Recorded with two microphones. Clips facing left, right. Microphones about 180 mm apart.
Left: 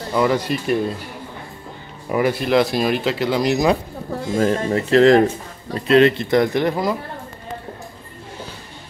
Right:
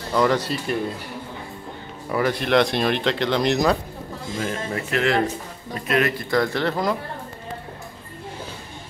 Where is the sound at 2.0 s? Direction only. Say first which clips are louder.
Left 3 dB; 15° left (ahead or behind).